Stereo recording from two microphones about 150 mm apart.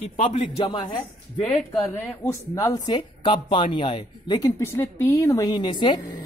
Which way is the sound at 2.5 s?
25° left (ahead or behind).